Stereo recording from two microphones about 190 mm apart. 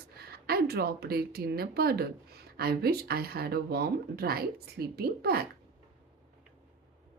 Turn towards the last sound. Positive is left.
turn(degrees=-55)  # may be behind; listen again after turning